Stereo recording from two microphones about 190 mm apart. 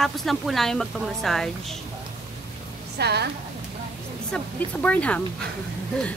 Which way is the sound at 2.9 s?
60° right (ahead or behind).